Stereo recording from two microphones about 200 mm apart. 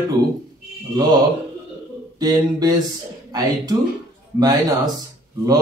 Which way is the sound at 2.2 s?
20° right (ahead or behind).